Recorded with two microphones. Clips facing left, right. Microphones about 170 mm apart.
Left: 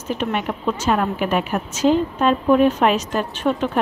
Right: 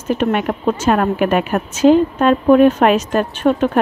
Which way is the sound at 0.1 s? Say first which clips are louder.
Right 6 dB; 55° right (ahead or behind).